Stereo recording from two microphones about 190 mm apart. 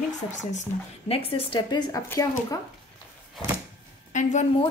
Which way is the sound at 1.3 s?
30° left (ahead or behind).